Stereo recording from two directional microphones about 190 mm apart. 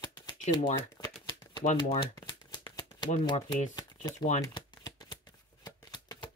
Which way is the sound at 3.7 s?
20° left (ahead or behind).